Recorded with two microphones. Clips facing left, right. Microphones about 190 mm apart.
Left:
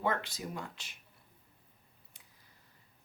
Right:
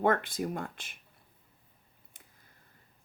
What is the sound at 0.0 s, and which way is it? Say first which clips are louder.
Speech: right 7 dB; 50° right (ahead or behind).